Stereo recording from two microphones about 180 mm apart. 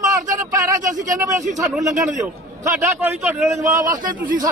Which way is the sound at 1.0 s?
20° right (ahead or behind).